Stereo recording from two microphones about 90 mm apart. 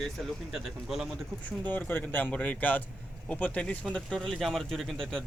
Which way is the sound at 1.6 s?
20° left (ahead or behind).